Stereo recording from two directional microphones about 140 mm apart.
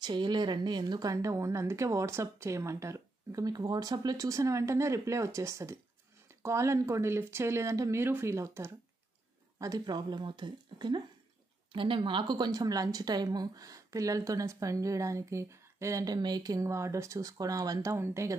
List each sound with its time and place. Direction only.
0.0 s a woman's voice: 30° right (ahead or behind)